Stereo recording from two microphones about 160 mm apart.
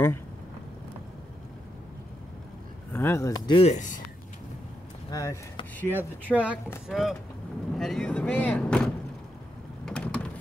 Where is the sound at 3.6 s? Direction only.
50° left (ahead or behind).